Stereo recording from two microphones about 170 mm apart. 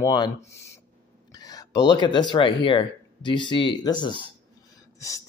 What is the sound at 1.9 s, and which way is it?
Speech, 25° left (ahead or behind).